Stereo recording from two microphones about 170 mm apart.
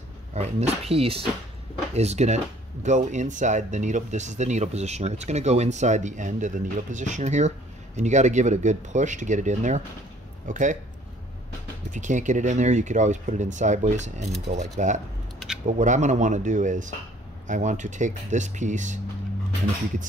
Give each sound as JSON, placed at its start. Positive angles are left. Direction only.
{"t": 0.3, "sound": "speech", "side_deg": -40}
{"t": 11.9, "sound": "speech", "side_deg": -45}
{"t": 15.3, "sound": "a sound", "side_deg": 0}
{"t": 15.6, "sound": "speech", "side_deg": -45}